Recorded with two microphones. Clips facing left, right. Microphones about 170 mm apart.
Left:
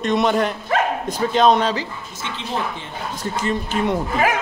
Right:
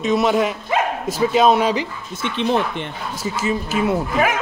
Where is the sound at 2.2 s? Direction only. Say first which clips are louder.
Right 8 dB; 65° right (ahead or behind).